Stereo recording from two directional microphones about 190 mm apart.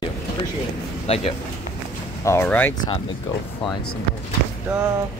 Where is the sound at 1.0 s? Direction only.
30° left (ahead or behind).